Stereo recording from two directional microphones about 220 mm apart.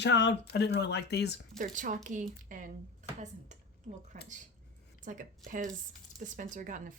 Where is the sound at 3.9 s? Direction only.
30° right (ahead or behind).